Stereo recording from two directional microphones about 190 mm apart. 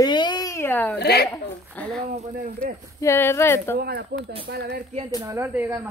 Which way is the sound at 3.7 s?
55° right (ahead or behind).